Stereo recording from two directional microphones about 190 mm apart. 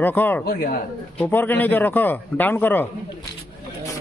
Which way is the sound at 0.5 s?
50° left (ahead or behind).